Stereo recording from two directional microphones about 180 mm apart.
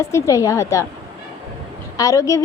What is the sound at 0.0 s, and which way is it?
Speech, 15° left (ahead or behind).